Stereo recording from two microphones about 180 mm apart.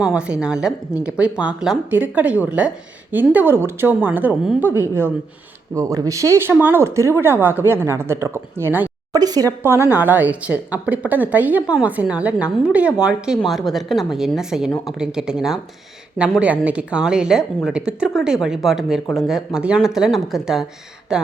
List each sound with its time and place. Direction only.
0.0 s a woman's voice: 5° right (ahead or behind)